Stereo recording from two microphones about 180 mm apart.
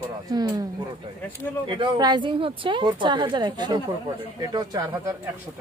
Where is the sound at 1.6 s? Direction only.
30° right (ahead or behind).